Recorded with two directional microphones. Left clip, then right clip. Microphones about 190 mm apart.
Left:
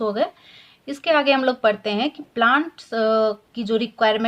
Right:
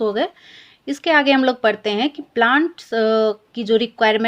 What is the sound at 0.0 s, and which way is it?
Speech, 30° right (ahead or behind).